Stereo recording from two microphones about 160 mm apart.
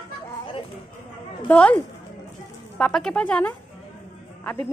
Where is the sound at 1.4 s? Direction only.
10° left (ahead or behind).